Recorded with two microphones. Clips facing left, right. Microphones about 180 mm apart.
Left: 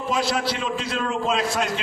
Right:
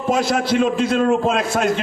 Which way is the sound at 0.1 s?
50° right (ahead or behind).